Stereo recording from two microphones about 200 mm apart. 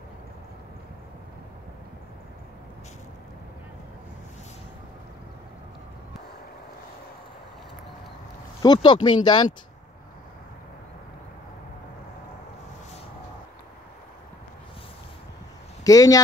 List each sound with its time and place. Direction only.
8.6 s speech: 25° left (ahead or behind)
15.8 s speech: 15° left (ahead or behind)